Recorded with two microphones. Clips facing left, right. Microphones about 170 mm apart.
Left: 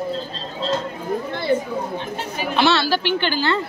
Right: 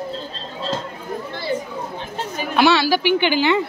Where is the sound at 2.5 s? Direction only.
10° right (ahead or behind).